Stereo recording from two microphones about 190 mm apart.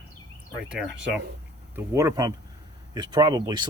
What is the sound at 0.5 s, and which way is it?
Speech, 5° right (ahead or behind).